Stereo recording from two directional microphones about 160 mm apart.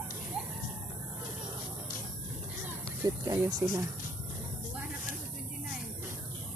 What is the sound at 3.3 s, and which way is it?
Speech, 25° right (ahead or behind).